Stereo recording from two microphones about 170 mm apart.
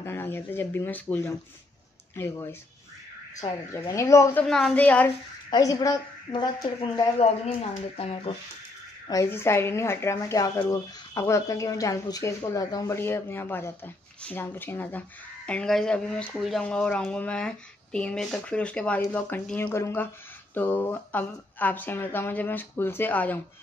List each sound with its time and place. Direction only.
0.0 s speech: 15° left (ahead or behind)
3.7 s speech: 15° left (ahead or behind)
5.5 s a woman's voice: 20° left (ahead or behind)
7.2 s speech: 35° left (ahead or behind)
9.0 s speech: 20° left (ahead or behind)